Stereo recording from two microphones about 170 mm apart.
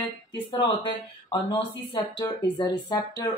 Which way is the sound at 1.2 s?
25° left (ahead or behind).